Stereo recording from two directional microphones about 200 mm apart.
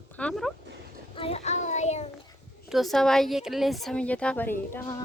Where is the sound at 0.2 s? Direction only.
5° left (ahead or behind).